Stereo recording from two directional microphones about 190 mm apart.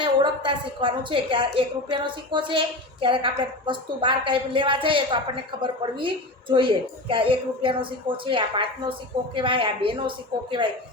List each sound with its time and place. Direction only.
0.0 s a woman's voice: 25° right (ahead or behind)